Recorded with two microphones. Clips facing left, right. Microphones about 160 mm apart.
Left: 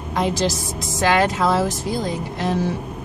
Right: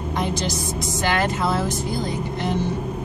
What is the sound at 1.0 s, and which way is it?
Speech, 90° left.